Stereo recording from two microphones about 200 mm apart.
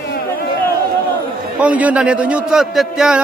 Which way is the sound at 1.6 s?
5° right (ahead or behind).